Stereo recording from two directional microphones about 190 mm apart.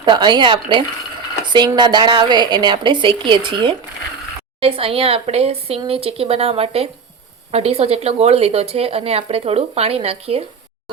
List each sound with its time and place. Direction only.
0.0 s a woman's voice: 25° right (ahead or behind)